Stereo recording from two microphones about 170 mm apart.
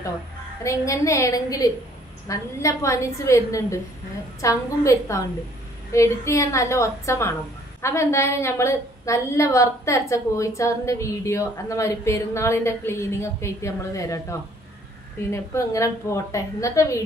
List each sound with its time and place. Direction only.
0.7 s a woman's voice: 15° left (ahead or behind)
15.3 s a woman's voice: 15° left (ahead or behind)